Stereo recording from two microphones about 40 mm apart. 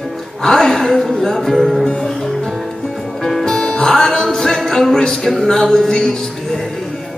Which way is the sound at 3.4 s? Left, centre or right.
Centre.